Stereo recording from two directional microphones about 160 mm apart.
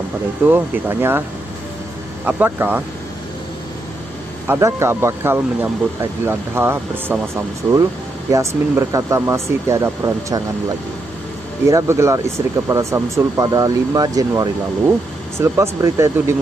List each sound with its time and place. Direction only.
0.5 s speech: 15° right (ahead or behind)
2.2 s speech: 10° right (ahead or behind)
4.5 s speech: 20° right (ahead or behind)
11.6 s speech: 20° right (ahead or behind)